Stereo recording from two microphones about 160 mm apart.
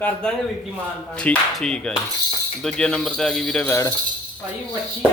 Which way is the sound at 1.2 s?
5° left (ahead or behind).